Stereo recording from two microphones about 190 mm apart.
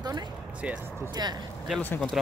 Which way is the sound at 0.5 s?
5° right (ahead or behind).